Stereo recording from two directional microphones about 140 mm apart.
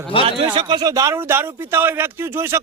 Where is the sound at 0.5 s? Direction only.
35° right (ahead or behind).